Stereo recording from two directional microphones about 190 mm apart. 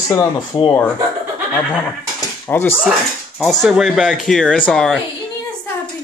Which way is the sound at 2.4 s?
10° left (ahead or behind).